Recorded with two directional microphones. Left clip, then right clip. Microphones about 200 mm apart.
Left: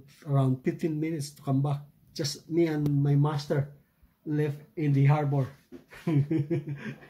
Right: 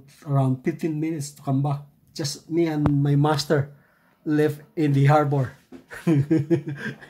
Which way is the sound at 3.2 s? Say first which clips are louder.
Right 9 dB; 50° right (ahead or behind).